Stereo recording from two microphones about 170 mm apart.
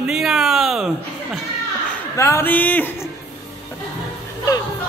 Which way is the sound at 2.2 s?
15° left (ahead or behind).